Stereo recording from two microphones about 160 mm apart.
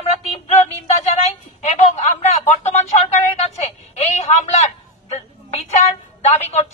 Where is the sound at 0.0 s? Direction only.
40° left (ahead or behind).